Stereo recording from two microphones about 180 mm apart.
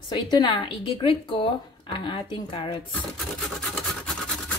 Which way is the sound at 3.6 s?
5° left (ahead or behind).